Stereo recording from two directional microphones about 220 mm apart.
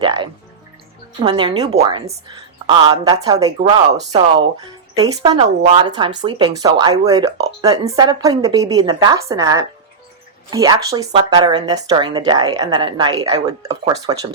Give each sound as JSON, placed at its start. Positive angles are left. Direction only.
{"t": 0.0, "sound": "speech", "side_deg": -20}